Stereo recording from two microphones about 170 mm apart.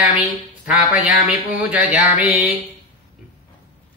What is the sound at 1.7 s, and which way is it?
Speech, 10° right (ahead or behind).